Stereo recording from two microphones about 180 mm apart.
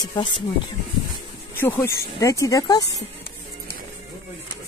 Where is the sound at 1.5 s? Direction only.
10° left (ahead or behind).